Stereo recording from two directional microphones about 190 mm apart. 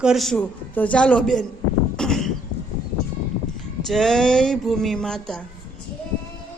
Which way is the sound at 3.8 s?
Centre (ahead or behind).